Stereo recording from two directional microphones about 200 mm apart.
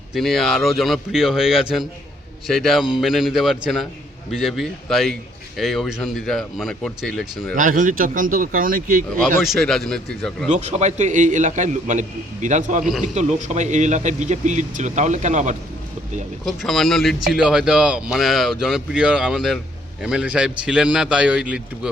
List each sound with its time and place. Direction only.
0.1 s speech: centre (ahead or behind)
7.5 s speech: 40° right (ahead or behind)
9.2 s speech: centre (ahead or behind)
10.5 s speech: 35° right (ahead or behind)
12.8 s speech: 5° right (ahead or behind)
13.1 s speech: 35° right (ahead or behind)
16.5 s speech: centre (ahead or behind)